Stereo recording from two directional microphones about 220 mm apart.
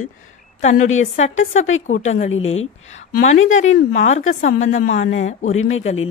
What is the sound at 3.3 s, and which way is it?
Speech, 60° left (ahead or behind).